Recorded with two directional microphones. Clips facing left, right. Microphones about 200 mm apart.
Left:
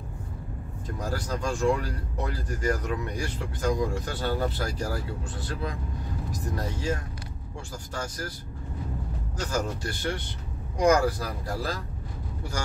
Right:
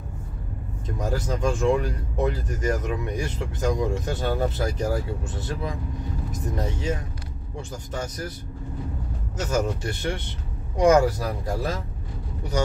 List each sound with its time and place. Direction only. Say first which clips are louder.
0.8 s speech: right 4 dB; 20° right (ahead or behind)
9.5 s speech: right 5 dB; 20° right (ahead or behind)